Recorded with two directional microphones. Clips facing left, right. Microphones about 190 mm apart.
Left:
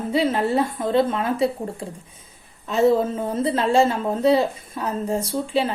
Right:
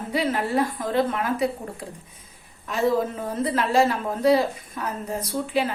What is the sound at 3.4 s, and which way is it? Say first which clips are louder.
A woman's voice: left 2 dB; 30° left (ahead or behind).